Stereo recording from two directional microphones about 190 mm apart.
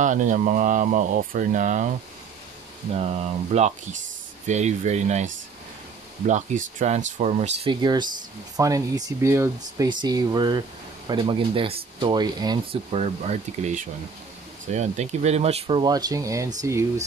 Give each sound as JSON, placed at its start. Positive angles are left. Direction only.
{"t": 0.0, "sound": "speech", "side_deg": -40}
{"t": 2.9, "sound": "speech", "side_deg": -35}
{"t": 7.8, "sound": "speech", "side_deg": -20}
{"t": 13.0, "sound": "speech", "side_deg": -35}